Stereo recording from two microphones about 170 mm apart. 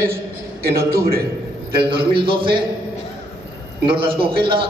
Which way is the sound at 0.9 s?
65° right (ahead or behind).